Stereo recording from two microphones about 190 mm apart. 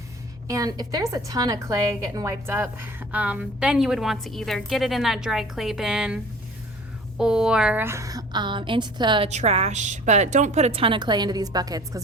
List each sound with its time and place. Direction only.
0.4 s a woman's voice: 20° right (ahead or behind)
7.2 s a woman's voice: 5° right (ahead or behind); by 9.3 s 25° right (ahead or behind)
9.3 s a woman's voice: 35° right (ahead or behind); by 11.9 s 20° right (ahead or behind)